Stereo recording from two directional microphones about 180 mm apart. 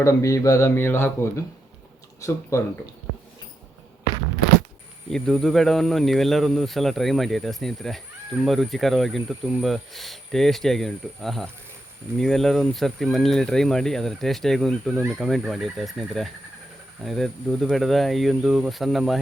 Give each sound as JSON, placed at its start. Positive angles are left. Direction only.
{"t": 0.0, "sound": "speech", "side_deg": 15}
{"t": 5.1, "sound": "speech", "side_deg": 0}